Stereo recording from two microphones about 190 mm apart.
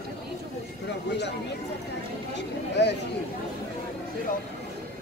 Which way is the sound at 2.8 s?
65° left (ahead or behind).